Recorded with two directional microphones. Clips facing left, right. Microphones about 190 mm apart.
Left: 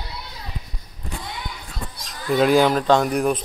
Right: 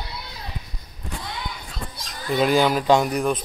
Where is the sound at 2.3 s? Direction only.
Centre (ahead or behind).